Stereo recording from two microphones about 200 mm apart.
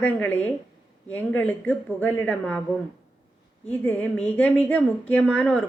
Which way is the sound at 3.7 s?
5° left (ahead or behind).